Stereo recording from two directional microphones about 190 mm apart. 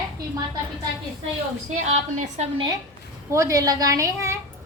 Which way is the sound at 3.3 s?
15° right (ahead or behind).